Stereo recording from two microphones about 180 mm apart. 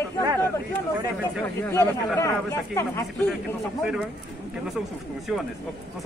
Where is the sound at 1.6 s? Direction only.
15° left (ahead or behind).